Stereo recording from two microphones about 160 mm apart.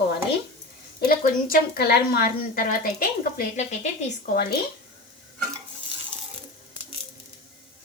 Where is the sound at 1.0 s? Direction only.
65° left (ahead or behind).